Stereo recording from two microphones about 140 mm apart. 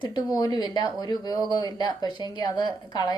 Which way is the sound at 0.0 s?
30° left (ahead or behind).